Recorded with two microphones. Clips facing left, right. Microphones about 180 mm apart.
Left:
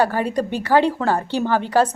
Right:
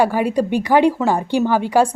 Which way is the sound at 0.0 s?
10° right (ahead or behind).